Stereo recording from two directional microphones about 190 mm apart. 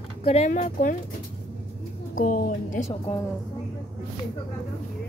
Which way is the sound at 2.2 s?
50° left (ahead or behind).